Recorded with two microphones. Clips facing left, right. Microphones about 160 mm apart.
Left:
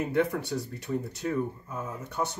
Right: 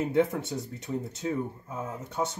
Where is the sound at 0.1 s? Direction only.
20° right (ahead or behind).